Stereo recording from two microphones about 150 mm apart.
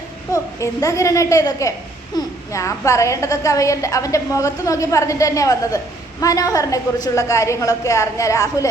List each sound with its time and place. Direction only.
0.3 s a child's voice: 20° left (ahead or behind)